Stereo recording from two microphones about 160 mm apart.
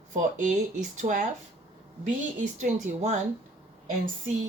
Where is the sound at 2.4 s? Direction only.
50° right (ahead or behind).